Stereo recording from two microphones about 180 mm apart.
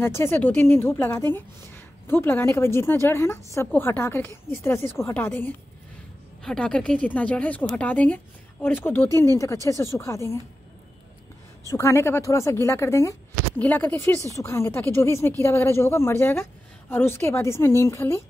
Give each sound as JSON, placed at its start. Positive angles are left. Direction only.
{"t": 0.0, "sound": "a woman's voice", "side_deg": 15}
{"t": 11.7, "sound": "a woman's voice", "side_deg": 15}